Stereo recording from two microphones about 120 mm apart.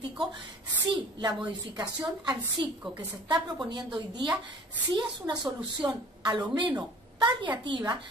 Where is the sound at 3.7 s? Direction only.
40° right (ahead or behind).